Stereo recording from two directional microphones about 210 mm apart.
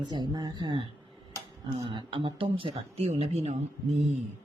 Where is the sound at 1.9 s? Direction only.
20° right (ahead or behind).